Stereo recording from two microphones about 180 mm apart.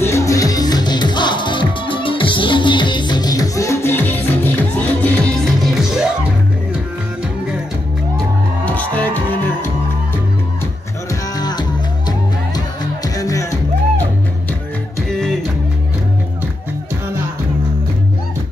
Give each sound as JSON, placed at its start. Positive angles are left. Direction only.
{"t": 0.0, "sound": "music", "side_deg": 15}
{"t": 8.6, "sound": "music", "side_deg": 10}
{"t": 11.1, "sound": "music", "side_deg": 20}